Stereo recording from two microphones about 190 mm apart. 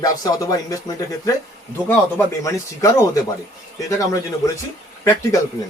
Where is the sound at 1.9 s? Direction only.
15° left (ahead or behind).